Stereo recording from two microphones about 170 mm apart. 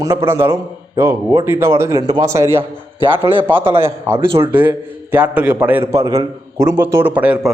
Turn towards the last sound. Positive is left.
turn(degrees=-5)  # may be behind; listen again after turning